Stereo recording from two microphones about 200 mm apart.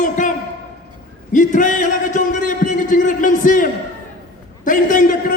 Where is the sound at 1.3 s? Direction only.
40° left (ahead or behind).